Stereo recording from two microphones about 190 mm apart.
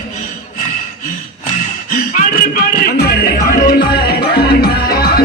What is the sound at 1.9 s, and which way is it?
Music, 50° left (ahead or behind).